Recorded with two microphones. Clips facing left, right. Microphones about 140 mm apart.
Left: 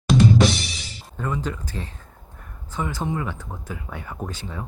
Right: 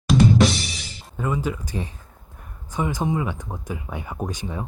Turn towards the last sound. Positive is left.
turn(degrees=-15)  # may be behind; listen again after turning